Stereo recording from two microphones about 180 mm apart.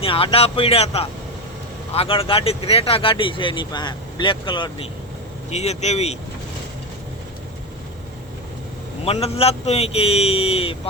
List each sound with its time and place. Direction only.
0.0 s speech: 30° left (ahead or behind)
5.5 s speech: 40° left (ahead or behind)
9.0 s speech: 35° left (ahead or behind)